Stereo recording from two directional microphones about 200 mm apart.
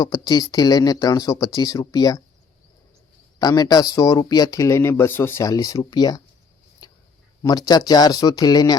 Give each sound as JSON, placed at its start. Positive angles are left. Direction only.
{"t": 0.0, "sound": "speech", "side_deg": 20}
{"t": 3.3, "sound": "speech", "side_deg": 20}
{"t": 6.8, "sound": "a sound", "side_deg": 20}
{"t": 7.4, "sound": "speech", "side_deg": 20}